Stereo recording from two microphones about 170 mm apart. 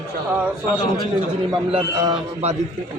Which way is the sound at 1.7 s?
25° right (ahead or behind).